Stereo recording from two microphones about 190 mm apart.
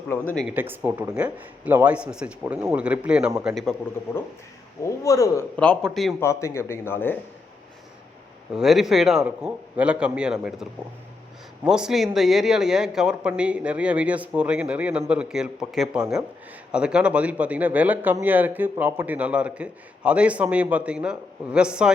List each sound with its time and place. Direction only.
0.1 s a man's voice: 10° left (ahead or behind)
0.4 s speech: 10° right (ahead or behind)
4.8 s a man's voice: 15° left (ahead or behind)
5.5 s speech: 5° left (ahead or behind)
6.1 s a man's voice: 15° left (ahead or behind)
8.5 s speech: centre (ahead or behind)